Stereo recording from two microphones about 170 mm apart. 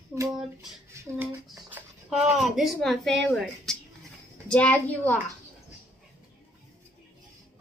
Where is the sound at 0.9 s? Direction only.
20° right (ahead or behind).